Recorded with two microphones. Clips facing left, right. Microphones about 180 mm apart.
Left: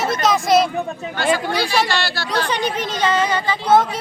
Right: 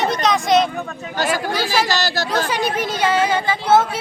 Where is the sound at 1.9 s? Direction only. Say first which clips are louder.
Right 2 dB; 45° right (ahead or behind).